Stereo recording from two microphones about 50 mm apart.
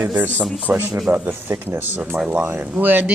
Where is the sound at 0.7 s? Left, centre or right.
Right.